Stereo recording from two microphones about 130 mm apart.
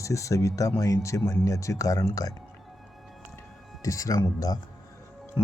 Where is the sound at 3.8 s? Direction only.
25° left (ahead or behind).